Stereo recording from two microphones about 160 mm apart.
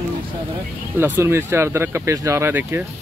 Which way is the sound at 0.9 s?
15° right (ahead or behind).